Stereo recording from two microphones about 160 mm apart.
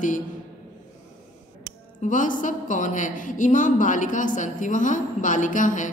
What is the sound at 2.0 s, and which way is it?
A woman's voice, 55° left (ahead or behind).